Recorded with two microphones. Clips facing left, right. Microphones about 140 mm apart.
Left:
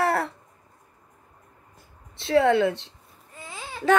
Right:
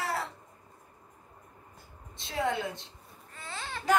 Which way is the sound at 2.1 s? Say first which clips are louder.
Left 12 dB; 70° left (ahead or behind).